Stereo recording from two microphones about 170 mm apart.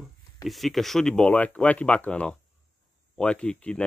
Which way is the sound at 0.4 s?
Centre (ahead or behind).